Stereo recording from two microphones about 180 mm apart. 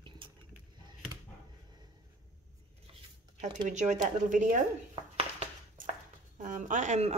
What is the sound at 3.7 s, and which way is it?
Speech, 40° right (ahead or behind).